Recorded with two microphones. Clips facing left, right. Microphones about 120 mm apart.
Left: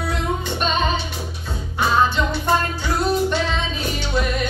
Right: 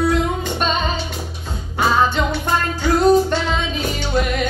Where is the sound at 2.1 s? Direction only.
50° right (ahead or behind).